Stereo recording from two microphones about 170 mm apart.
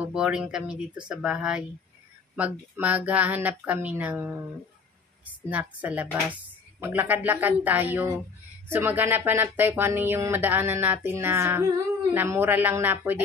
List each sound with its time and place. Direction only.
0.0 s speech: 5° right (ahead or behind)
5.5 s speech: 10° right (ahead or behind)